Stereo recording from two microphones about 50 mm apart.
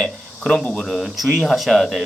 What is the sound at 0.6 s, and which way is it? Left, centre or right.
Speech, centre.